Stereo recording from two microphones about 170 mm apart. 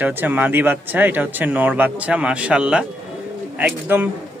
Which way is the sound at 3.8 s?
10° right (ahead or behind).